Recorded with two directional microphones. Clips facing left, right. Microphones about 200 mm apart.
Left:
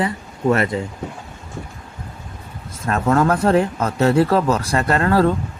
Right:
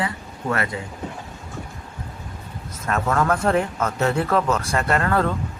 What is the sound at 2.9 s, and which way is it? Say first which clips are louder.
Speech: left 4 dB; 35° left (ahead or behind).